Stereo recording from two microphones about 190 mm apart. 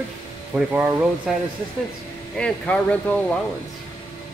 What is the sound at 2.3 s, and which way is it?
Speech, 5° left (ahead or behind).